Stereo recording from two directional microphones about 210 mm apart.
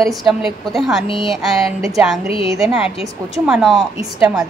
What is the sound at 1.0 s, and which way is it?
Speech, 25° left (ahead or behind).